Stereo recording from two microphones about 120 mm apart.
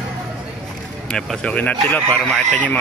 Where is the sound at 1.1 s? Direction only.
5° left (ahead or behind).